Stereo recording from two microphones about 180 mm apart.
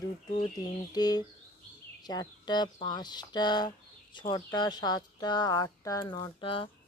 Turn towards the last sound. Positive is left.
turn(degrees=30)  # may be behind; listen again after turning